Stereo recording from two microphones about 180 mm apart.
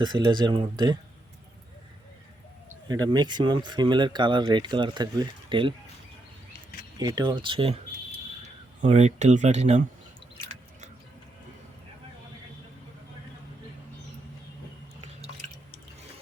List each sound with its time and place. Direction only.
0.0 s speech: 25° right (ahead or behind)
2.8 s speech: 25° right (ahead or behind)
7.0 s speech: 20° right (ahead or behind)
8.8 s speech: 35° right (ahead or behind)